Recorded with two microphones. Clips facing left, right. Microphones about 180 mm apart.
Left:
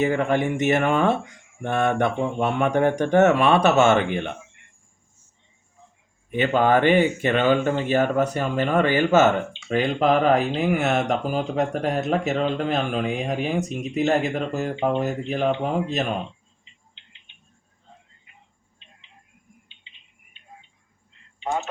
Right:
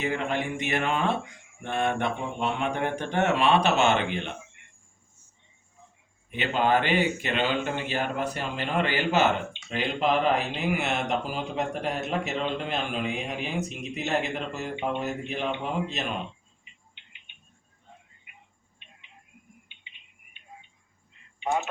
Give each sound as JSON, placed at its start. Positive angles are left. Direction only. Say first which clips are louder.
{"t": 0.0, "sound": "speech", "louder": "left 7 dB", "side_deg": 50}
{"t": 6.5, "sound": "speech", "louder": "left 6 dB", "side_deg": 50}